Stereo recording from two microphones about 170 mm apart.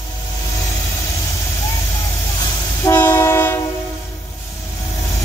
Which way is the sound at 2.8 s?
15° left (ahead or behind).